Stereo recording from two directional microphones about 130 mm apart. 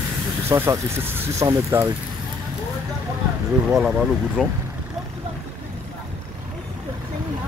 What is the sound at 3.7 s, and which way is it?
Speech, 5° right (ahead or behind).